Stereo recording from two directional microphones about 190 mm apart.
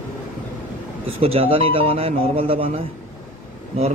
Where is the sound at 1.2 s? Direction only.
30° right (ahead or behind).